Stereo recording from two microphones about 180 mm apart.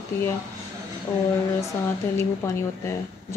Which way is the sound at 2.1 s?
15° left (ahead or behind).